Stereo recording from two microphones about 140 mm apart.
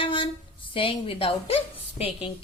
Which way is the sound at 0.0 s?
40° left (ahead or behind).